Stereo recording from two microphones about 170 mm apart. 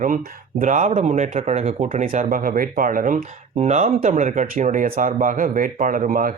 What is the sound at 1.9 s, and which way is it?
Speech, 50° right (ahead or behind).